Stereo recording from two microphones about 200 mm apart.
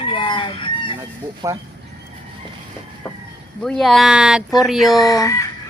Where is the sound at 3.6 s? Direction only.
Centre (ahead or behind).